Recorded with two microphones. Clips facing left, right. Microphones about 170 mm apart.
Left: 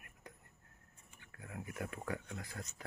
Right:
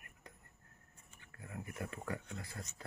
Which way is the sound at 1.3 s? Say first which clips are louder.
Left 1 dB; centre (ahead or behind).